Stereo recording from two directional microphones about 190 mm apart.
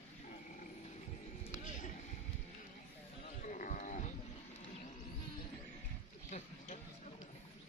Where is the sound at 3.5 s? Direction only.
40° left (ahead or behind).